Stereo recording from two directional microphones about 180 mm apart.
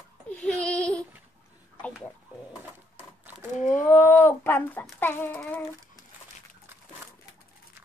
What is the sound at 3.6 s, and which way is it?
Speech, 45° left (ahead or behind).